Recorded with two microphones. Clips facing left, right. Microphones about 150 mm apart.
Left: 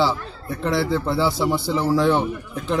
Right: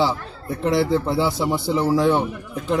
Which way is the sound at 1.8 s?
5° right (ahead or behind).